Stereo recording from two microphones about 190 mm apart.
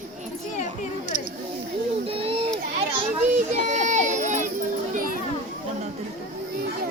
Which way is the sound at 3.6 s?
40° right (ahead or behind).